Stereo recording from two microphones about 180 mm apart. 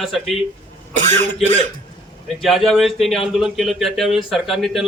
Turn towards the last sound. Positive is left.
turn(degrees=0)  # may be behind; listen again after turning